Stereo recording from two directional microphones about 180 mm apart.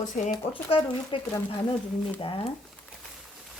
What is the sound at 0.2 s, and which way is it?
Speech, 40° left (ahead or behind).